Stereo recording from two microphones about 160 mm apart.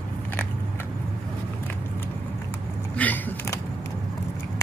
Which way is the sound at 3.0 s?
10° left (ahead or behind).